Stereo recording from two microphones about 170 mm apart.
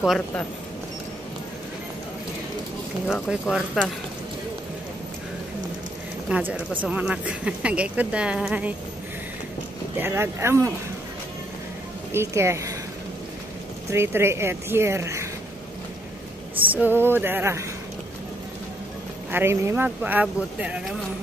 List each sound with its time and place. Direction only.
3.1 s speech: 5° right (ahead or behind)
6.2 s speech: 5° right (ahead or behind)
9.9 s speech: 15° right (ahead or behind)
12.1 s speech: 15° right (ahead or behind)
13.8 s speech: 15° right (ahead or behind)
16.7 s speech: 10° right (ahead or behind)
19.3 s speech: 15° right (ahead or behind)